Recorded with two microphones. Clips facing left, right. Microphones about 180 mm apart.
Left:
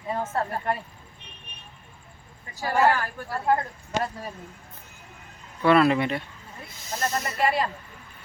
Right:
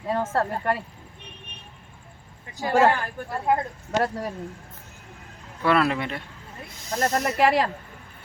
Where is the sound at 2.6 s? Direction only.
20° right (ahead or behind).